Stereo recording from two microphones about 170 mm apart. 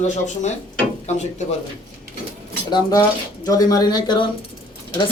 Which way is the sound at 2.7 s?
25° left (ahead or behind).